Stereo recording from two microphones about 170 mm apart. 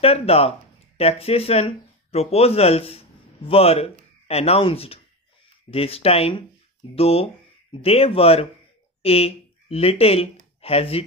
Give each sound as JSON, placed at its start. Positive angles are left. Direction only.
{"t": 0.0, "sound": "speech", "side_deg": 35}